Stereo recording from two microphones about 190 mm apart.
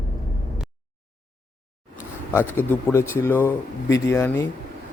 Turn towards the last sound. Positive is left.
turn(degrees=15)  # may be behind; listen again after turning